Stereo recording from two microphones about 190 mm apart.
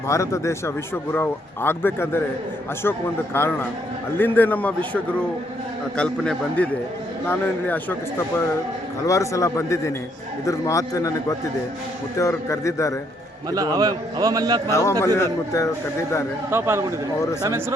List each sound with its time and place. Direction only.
0.1 s speech: 15° left (ahead or behind)
3.3 s speech: 10° left (ahead or behind)
6.0 s a man's voice: 5° left (ahead or behind)
9.0 s speech: 15° left (ahead or behind)
13.5 s a man's voice: 20° right (ahead or behind)
14.7 s speech: 15° left (ahead or behind)
16.5 s a man's voice: 15° right (ahead or behind)